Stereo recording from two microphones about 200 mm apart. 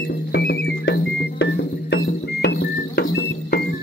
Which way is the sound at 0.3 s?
55° left (ahead or behind).